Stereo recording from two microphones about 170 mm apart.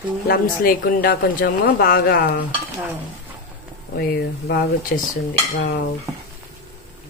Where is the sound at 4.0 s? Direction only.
70° left (ahead or behind).